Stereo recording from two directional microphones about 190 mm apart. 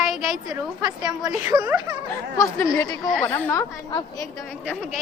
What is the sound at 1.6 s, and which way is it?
Speech, 10° right (ahead or behind).